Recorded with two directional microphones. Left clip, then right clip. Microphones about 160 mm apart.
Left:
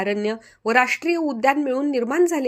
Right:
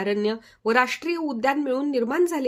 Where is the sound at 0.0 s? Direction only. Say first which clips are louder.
Left 1 dB; 10° left (ahead or behind).